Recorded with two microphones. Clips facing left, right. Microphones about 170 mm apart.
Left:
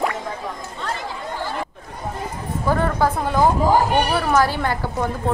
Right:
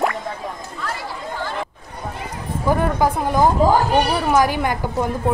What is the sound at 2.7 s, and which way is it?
A woman's voice, 15° right (ahead or behind).